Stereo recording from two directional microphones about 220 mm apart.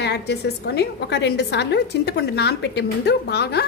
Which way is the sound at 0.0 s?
50° left (ahead or behind).